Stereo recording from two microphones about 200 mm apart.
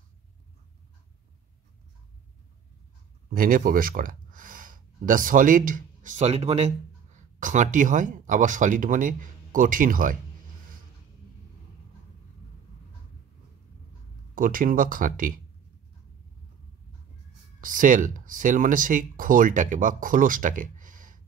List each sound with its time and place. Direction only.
3.3 s speech: 45° right (ahead or behind)
14.3 s speech: 45° right (ahead or behind)
17.6 s speech: 40° right (ahead or behind)